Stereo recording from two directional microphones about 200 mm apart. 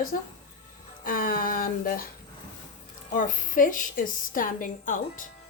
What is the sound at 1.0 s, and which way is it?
Speech, 45° left (ahead or behind).